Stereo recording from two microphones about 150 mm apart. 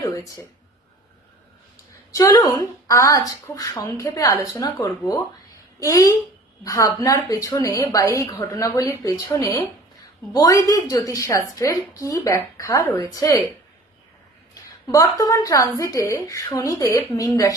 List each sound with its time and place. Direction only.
2.1 s a woman's voice: 20° left (ahead or behind)
14.5 s a woman's voice: 25° left (ahead or behind)